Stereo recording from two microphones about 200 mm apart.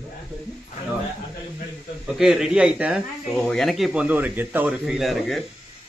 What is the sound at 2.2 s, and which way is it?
Speech, 5° right (ahead or behind).